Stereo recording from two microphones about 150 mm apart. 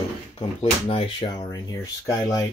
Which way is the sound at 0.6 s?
40° left (ahead or behind).